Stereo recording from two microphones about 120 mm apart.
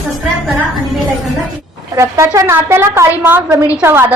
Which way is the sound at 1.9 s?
25° right (ahead or behind).